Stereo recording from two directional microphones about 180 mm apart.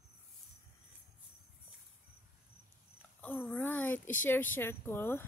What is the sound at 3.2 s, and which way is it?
Speech, 10° left (ahead or behind).